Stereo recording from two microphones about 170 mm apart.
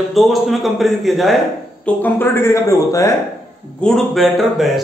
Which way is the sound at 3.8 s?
Centre (ahead or behind).